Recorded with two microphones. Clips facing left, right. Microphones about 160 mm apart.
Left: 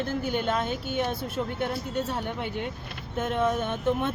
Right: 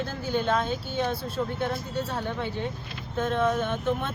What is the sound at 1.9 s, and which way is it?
Speech, 20° left (ahead or behind).